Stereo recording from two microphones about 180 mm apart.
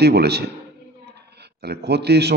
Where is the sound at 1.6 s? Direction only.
65° right (ahead or behind).